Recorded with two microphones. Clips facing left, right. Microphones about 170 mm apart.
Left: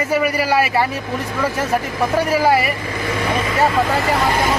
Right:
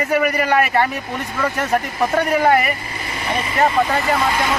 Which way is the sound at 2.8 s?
90° left.